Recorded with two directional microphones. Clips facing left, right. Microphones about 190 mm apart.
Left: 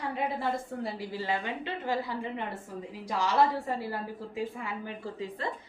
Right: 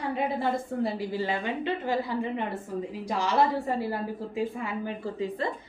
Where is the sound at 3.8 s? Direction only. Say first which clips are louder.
Right 5 dB; 25° right (ahead or behind).